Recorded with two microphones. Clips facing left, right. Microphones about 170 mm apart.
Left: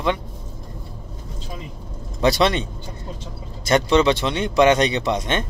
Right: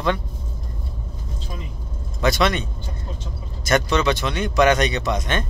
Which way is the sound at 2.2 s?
30° left (ahead or behind).